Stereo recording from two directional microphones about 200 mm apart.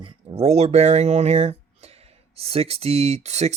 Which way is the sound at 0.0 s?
30° right (ahead or behind).